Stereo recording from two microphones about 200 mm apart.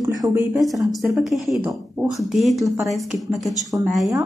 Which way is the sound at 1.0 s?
Centre (ahead or behind).